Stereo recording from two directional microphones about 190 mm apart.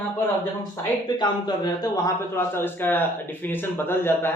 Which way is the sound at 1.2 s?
20° left (ahead or behind).